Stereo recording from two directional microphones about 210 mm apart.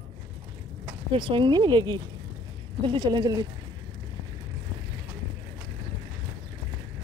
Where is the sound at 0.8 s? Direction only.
25° right (ahead or behind).